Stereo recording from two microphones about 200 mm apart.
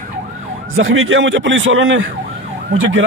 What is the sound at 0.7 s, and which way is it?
A man's voice, 80° right.